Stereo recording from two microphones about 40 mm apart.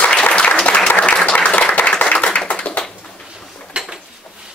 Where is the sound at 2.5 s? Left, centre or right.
Left.